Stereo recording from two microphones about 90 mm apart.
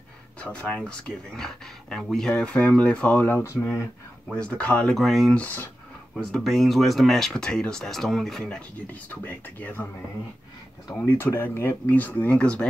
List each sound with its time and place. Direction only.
0.4 s speech: 10° left (ahead or behind)
3.4 s speech: 35° left (ahead or behind)
4.3 s speech: 15° left (ahead or behind)
5.4 s speech: 20° left (ahead or behind)
6.3 s speech: centre (ahead or behind); by 9.8 s 20° left (ahead or behind)
11.0 s speech: 25° left (ahead or behind)